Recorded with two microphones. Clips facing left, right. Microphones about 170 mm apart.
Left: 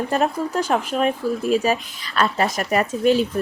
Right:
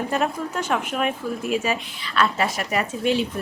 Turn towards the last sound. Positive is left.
turn(degrees=40)  # may be behind; listen again after turning